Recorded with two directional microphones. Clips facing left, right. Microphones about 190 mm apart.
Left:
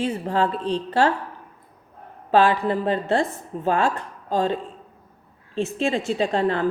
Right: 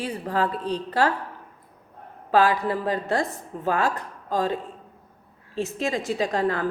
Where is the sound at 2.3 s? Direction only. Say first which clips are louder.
Left 2 dB; 25° left (ahead or behind).